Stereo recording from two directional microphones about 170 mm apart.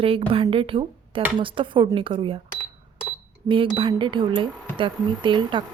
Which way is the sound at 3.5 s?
30° right (ahead or behind).